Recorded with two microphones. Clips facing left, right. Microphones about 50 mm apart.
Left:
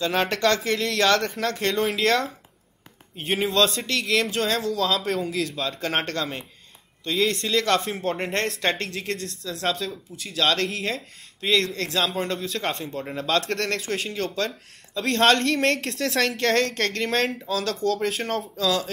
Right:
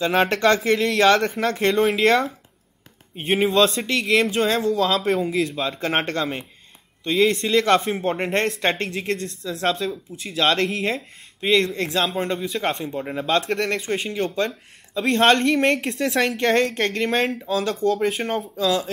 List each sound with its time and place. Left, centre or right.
0.0 s a woman's voice: right
1.8 s a woman's voice: centre